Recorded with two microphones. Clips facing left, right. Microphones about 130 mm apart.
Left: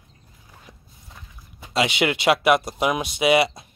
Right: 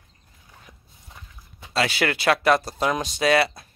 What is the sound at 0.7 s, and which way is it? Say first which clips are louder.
Clip-clop: left 3 dB; 30° left (ahead or behind).